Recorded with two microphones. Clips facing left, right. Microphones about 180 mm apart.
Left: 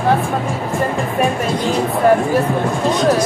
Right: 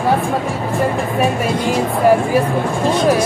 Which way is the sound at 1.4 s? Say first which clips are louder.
Right 1 dB; 10° right (ahead or behind).